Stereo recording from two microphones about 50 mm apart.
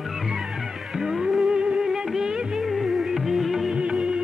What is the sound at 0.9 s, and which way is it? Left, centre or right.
Music, centre.